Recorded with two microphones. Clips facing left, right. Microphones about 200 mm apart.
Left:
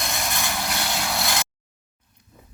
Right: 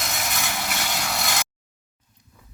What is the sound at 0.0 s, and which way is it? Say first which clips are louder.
Vehicle: left 1 dB; centre (ahead or behind).